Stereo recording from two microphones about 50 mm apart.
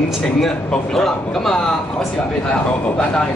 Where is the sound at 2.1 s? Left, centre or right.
Left.